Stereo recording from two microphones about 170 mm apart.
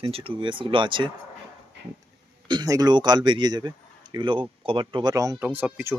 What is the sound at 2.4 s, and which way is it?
Speech, 25° right (ahead or behind).